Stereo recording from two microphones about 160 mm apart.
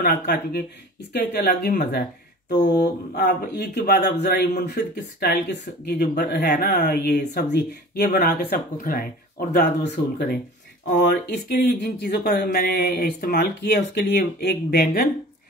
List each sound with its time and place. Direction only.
0.0 s speech: 80° left
1.1 s speech: 75° left (ahead or behind)
2.6 s speech: 85° left
6.5 s speech: 65° left (ahead or behind)
10.1 s speech: 70° left (ahead or behind)